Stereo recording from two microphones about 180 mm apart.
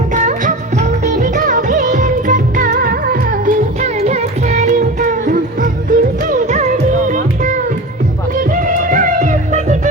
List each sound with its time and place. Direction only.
0.1 s music: 45° right (ahead or behind)